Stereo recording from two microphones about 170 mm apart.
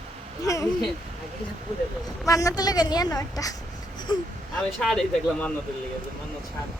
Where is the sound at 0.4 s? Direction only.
20° left (ahead or behind).